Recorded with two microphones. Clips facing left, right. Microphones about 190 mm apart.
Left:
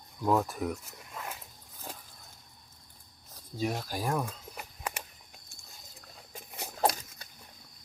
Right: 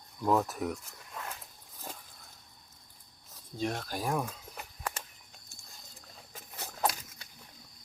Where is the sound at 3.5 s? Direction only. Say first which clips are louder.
Left 1 dB; 5° left (ahead or behind).